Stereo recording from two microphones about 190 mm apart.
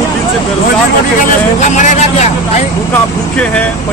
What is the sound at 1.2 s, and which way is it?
Speech, 40° left (ahead or behind).